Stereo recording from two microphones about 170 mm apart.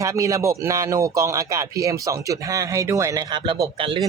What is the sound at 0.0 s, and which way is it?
A man's voice, 20° right (ahead or behind).